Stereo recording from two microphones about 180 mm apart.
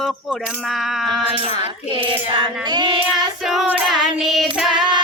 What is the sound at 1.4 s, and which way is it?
Music, 30° right (ahead or behind).